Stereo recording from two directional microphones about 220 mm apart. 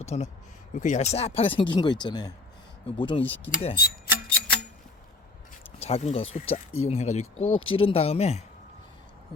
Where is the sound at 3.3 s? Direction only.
10° left (ahead or behind).